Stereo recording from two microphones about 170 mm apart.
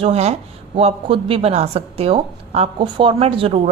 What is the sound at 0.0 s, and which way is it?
Speech, 35° right (ahead or behind).